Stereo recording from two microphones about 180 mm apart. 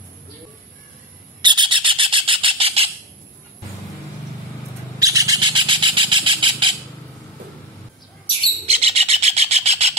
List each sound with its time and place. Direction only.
1.4 s bird: 25° right (ahead or behind)
4.9 s bird: 20° right (ahead or behind)
8.6 s bird: 35° right (ahead or behind)